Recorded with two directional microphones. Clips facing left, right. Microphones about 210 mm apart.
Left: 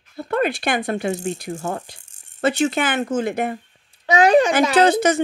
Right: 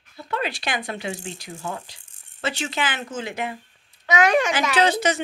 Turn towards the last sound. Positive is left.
turn(degrees=50)  # may be behind; listen again after turning